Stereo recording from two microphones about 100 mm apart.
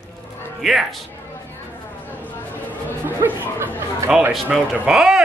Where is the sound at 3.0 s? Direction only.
20° right (ahead or behind).